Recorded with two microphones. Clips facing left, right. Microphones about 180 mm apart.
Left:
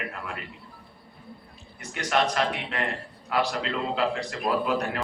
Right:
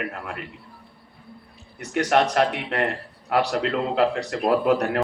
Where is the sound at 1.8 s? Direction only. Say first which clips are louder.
Right 6 dB; 60° right (ahead or behind).